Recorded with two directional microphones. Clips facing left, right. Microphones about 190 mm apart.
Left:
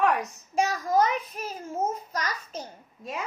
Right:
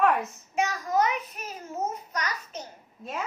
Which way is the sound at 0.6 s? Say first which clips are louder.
Left 2 dB; 30° left (ahead or behind).